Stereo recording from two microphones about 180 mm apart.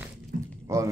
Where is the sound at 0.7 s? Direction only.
15° right (ahead or behind).